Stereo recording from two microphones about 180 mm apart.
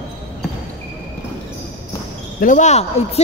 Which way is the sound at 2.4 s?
45° left (ahead or behind).